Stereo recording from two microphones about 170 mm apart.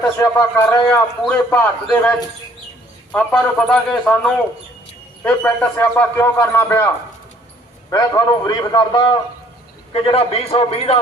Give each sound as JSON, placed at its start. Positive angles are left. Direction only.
{"t": 0.2, "sound": "a man's voice", "side_deg": 15}